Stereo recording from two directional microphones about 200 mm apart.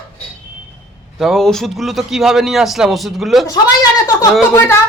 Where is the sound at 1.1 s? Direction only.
Centre (ahead or behind).